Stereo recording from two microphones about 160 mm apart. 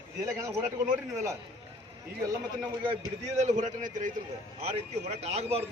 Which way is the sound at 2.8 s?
45° right (ahead or behind).